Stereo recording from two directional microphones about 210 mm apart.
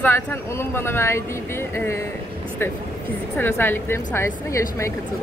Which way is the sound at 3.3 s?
10° left (ahead or behind).